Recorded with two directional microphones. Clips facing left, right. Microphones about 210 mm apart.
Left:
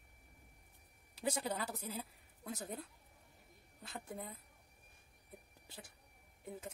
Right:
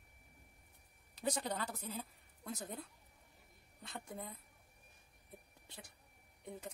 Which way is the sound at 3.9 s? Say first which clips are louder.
Left 1 dB; 5° left (ahead or behind).